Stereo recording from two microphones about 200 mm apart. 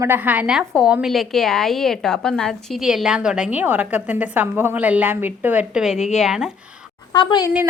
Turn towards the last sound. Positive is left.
turn(degrees=20)  # may be behind; listen again after turning